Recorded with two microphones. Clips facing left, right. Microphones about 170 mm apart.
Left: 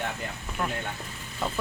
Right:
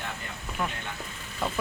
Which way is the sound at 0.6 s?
5° left (ahead or behind).